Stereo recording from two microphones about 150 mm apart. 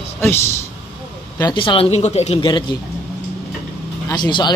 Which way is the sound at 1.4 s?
30° left (ahead or behind).